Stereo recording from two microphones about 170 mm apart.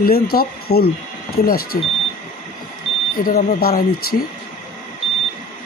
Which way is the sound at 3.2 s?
55° left (ahead or behind).